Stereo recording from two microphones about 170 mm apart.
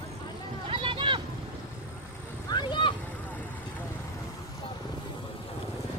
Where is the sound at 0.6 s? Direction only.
30° right (ahead or behind).